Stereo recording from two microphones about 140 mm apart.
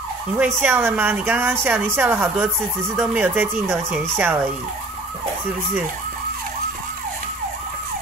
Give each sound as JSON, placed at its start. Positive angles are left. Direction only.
{"t": 0.4, "sound": "speech", "side_deg": -15}